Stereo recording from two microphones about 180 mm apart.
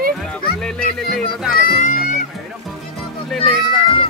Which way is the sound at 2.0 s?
45° left (ahead or behind).